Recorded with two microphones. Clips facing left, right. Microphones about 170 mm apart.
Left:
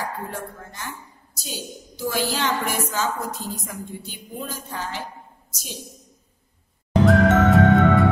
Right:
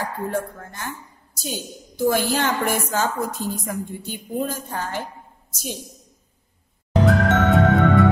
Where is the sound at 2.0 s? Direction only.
50° right (ahead or behind).